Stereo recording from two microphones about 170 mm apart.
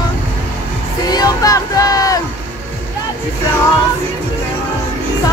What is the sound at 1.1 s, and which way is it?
Speech, 20° left (ahead or behind).